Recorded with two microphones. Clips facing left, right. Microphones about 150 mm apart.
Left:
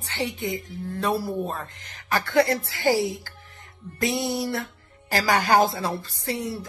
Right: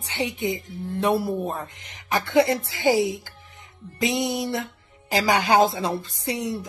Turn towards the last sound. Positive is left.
turn(degrees=-20)  # may be behind; listen again after turning